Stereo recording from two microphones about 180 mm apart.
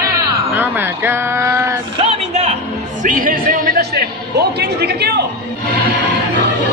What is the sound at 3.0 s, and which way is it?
A man's voice, 50° right (ahead or behind).